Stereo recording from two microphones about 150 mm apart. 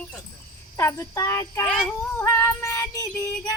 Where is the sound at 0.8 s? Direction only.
20° left (ahead or behind).